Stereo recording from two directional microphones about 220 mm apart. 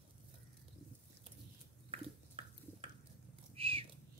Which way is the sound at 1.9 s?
25° right (ahead or behind).